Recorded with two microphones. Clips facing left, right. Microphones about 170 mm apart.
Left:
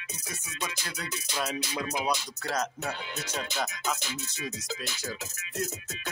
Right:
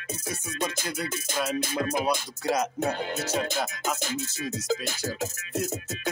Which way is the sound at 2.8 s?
45° right (ahead or behind).